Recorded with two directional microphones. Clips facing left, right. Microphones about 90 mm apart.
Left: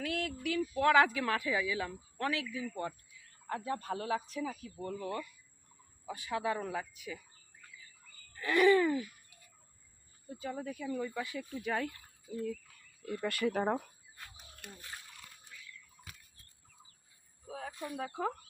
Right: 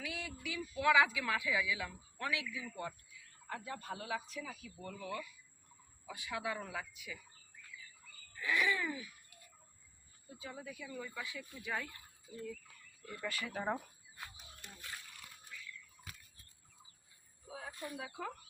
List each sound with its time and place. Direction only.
0.0 s speech: 55° left (ahead or behind); by 7.2 s 40° left (ahead or behind)
8.4 s speech: 55° left (ahead or behind)
10.2 s speech: 55° left (ahead or behind)
13.1 s speech: 65° left (ahead or behind)
17.5 s speech: 50° left (ahead or behind)